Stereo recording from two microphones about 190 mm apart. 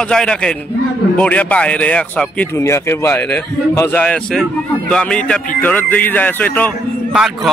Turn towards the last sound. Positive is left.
turn(degrees=0)  # may be behind; listen again after turning